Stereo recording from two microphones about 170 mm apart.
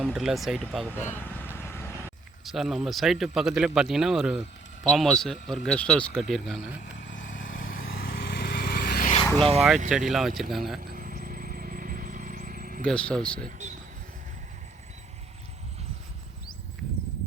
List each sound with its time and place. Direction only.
0.0 s speech: 5° right (ahead or behind)
0.9 s speech: 10° left (ahead or behind)
1.5 s vehicle: 15° left (ahead or behind)
2.4 s speech: centre (ahead or behind)
7.2 s vehicle: 50° left (ahead or behind)
9.4 s speech: 35° right (ahead or behind)
10.1 s speech: centre (ahead or behind)
10.8 s vehicle: 55° right (ahead or behind)
12.8 s speech: 5° left (ahead or behind)
13.4 s speech: 45° right (ahead or behind)